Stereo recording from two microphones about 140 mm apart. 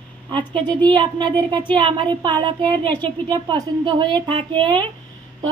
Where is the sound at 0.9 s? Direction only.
30° right (ahead or behind).